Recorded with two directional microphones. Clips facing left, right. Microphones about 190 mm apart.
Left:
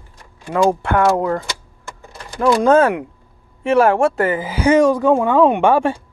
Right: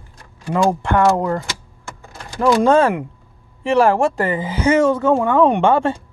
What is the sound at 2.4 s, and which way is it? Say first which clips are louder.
Speech: left 1 dB; centre (ahead or behind).